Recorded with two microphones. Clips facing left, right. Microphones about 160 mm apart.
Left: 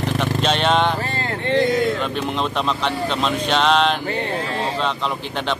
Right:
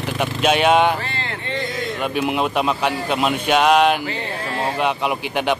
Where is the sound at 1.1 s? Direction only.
40° left (ahead or behind).